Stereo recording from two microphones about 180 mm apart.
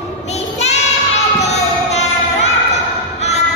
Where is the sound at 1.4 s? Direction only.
40° left (ahead or behind).